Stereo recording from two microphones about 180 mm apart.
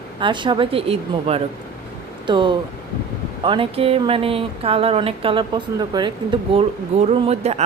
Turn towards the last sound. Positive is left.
turn(degrees=-35)  # may be behind; listen again after turning